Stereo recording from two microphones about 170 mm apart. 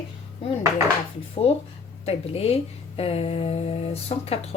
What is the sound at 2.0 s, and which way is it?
Speech, 35° left (ahead or behind).